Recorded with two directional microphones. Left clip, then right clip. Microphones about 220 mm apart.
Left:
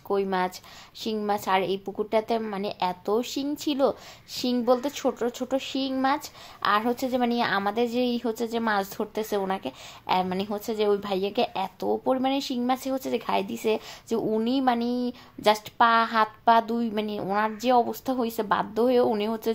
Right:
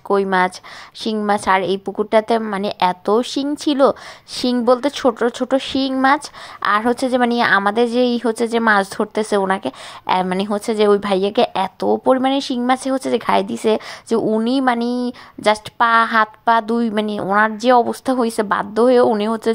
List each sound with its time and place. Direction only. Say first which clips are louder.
0.1 s a woman's voice: right 10 dB; 25° right (ahead or behind)